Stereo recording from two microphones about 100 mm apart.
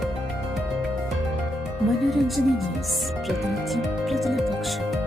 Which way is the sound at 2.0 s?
Centre (ahead or behind).